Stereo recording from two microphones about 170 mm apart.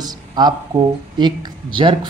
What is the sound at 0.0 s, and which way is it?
Speech, 25° right (ahead or behind).